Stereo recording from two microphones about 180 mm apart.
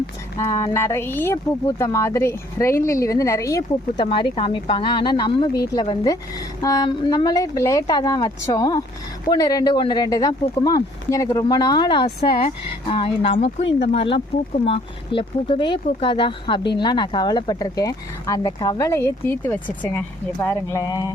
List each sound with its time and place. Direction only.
0.3 s speech: 20° left (ahead or behind)